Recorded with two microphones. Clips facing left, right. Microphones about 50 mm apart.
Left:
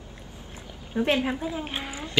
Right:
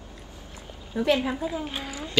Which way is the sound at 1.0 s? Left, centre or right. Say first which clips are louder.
Right 1 dB; left.